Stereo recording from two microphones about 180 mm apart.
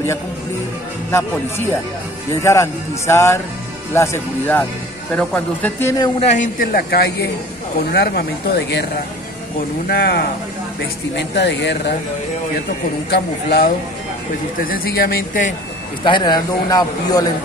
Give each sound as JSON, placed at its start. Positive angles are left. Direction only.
{"t": 1.1, "sound": "speech", "side_deg": 15}
{"t": 6.1, "sound": "a man's voice", "side_deg": 40}
{"t": 6.6, "sound": "speech", "side_deg": 60}
{"t": 9.8, "sound": "speech", "side_deg": 60}
{"t": 11.1, "sound": "speech", "side_deg": 75}
{"t": 13.1, "sound": "speech", "side_deg": 65}
{"t": 16.0, "sound": "speech", "side_deg": 25}